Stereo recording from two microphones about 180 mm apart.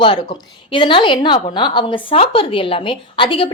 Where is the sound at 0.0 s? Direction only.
25° left (ahead or behind).